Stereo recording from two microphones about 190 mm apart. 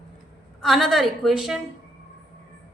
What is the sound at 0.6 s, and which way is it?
Speech, centre (ahead or behind).